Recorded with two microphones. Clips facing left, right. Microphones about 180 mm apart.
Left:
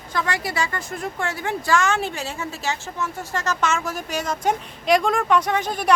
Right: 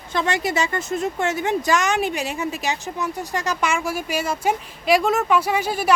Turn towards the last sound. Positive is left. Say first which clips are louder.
# right 1 dB
turn(degrees=-5)  # may be behind; listen again after turning